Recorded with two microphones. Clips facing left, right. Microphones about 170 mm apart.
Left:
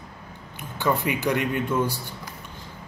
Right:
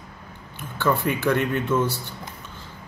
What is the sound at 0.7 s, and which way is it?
Speech, 15° left (ahead or behind).